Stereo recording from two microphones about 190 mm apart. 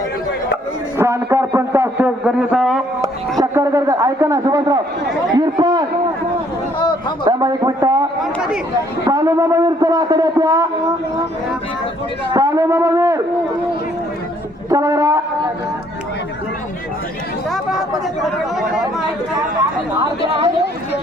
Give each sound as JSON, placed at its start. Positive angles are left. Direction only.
{"t": 0.9, "sound": "a man's voice", "side_deg": -15}
{"t": 3.4, "sound": "a man's voice", "side_deg": -15}
{"t": 7.3, "sound": "a man's voice", "side_deg": -20}
{"t": 8.2, "sound": "speech", "side_deg": -5}
{"t": 9.0, "sound": "a man's voice", "side_deg": -15}
{"t": 12.3, "sound": "a man's voice", "side_deg": -20}
{"t": 14.7, "sound": "a man's voice", "side_deg": -15}
{"t": 17.5, "sound": "speech", "side_deg": 0}